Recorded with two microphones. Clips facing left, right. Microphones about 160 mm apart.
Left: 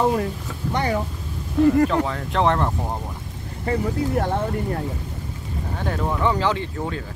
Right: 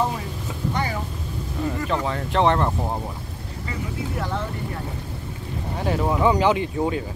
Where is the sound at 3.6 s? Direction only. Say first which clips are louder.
Left 8 dB; 55° left (ahead or behind).